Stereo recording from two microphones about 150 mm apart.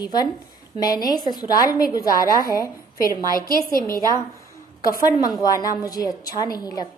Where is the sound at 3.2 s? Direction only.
25° right (ahead or behind).